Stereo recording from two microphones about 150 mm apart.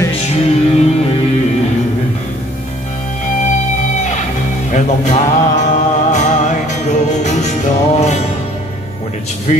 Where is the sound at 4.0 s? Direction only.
50° left (ahead or behind).